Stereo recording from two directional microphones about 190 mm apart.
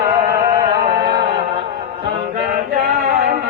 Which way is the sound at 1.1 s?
25° right (ahead or behind).